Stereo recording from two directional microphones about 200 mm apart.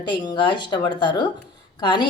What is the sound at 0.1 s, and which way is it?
A woman's voice, 25° left (ahead or behind).